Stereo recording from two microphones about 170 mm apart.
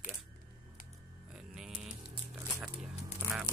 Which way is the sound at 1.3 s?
5° right (ahead or behind).